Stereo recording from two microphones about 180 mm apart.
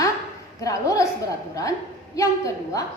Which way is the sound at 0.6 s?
20° left (ahead or behind).